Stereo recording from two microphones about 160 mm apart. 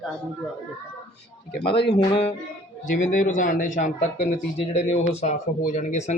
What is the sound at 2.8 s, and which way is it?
A man's voice, 55° left (ahead or behind).